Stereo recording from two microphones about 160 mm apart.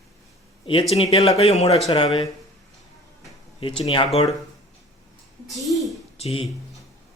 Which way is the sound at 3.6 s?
35° left (ahead or behind).